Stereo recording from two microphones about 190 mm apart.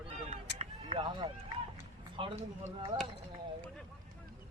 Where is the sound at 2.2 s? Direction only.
25° right (ahead or behind).